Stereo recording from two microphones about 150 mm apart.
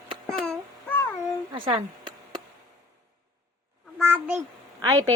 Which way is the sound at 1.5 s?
35° right (ahead or behind).